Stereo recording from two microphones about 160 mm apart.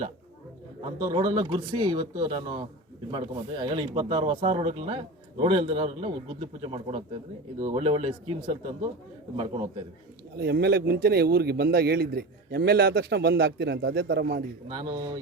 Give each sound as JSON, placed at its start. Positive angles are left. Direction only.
{"t": 1.0, "sound": "speech", "side_deg": -25}
{"t": 10.3, "sound": "a man's voice", "side_deg": -90}
{"t": 14.7, "sound": "speech", "side_deg": -25}